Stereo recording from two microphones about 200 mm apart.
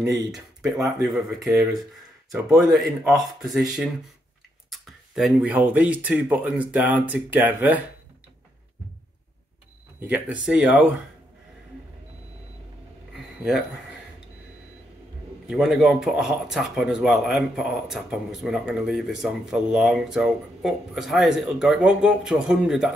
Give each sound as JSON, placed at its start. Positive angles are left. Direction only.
{"t": 0.0, "sound": "speech", "side_deg": -15}
{"t": 0.3, "sound": "speech", "side_deg": -5}
{"t": 4.6, "sound": "speech", "side_deg": 0}
{"t": 9.9, "sound": "speech", "side_deg": -5}
{"t": 13.1, "sound": "a sound", "side_deg": -5}
{"t": 15.4, "sound": "speech", "side_deg": 0}